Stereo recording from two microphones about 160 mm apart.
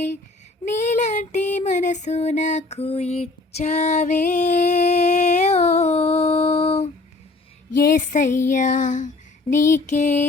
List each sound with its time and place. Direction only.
0.8 s child singing: 50° left (ahead or behind)
7.9 s child singing: 55° left (ahead or behind)